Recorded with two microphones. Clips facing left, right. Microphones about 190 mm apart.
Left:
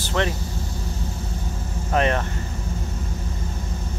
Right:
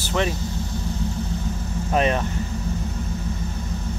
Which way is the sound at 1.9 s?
15° right (ahead or behind).